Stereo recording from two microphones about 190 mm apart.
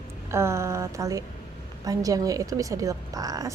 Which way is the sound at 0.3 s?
15° right (ahead or behind).